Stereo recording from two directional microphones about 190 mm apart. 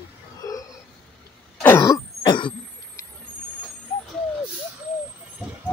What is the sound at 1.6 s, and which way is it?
Throat clearing, 15° left (ahead or behind).